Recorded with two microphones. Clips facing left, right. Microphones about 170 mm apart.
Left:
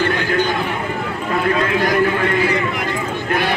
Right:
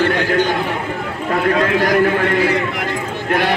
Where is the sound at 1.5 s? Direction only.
65° right (ahead or behind).